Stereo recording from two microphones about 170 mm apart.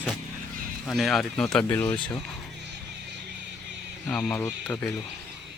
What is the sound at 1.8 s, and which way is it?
Speech, 30° left (ahead or behind).